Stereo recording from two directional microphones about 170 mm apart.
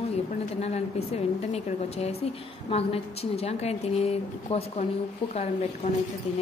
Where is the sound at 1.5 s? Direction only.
35° left (ahead or behind).